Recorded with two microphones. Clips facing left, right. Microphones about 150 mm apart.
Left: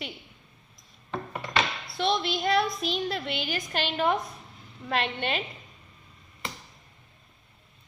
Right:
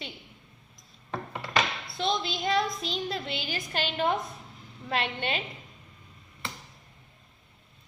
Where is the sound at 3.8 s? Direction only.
40° left (ahead or behind).